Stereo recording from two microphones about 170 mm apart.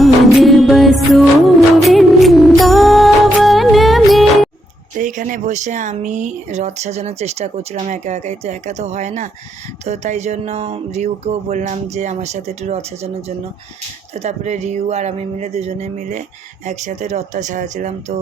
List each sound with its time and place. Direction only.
0.0 s music: centre (ahead or behind)
4.9 s speech: 50° right (ahead or behind)
9.8 s music: 40° right (ahead or behind)
16.6 s speech: 45° right (ahead or behind)